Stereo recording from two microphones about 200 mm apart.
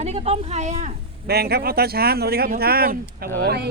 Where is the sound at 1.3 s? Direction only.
50° right (ahead or behind).